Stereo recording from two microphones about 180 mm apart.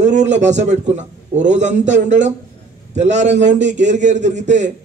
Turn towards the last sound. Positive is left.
turn(degrees=-40)  # may be behind; listen again after turning